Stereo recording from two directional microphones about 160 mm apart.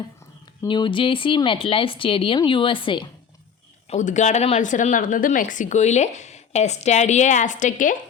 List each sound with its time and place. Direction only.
0.7 s speech: 30° left (ahead or behind)
3.8 s speech: 50° left (ahead or behind)